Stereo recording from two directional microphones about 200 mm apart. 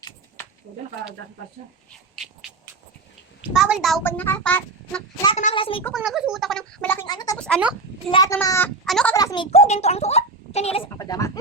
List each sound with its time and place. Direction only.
3.5 s speech: centre (ahead or behind)
4.0 s a child's voice: 10° left (ahead or behind)
5.4 s a woman's voice: 30° left (ahead or behind)
5.9 s speech: centre (ahead or behind)
7.0 s speech: 20° left (ahead or behind)
7.3 s speech: 5° left (ahead or behind)
8.1 s a child's voice: 15° left (ahead or behind)
9.1 s a child's voice: 20° left (ahead or behind)
10.8 s a child's voice: 20° left (ahead or behind)